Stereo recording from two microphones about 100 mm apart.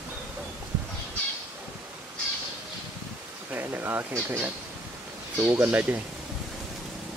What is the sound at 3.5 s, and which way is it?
Speech, 20° right (ahead or behind).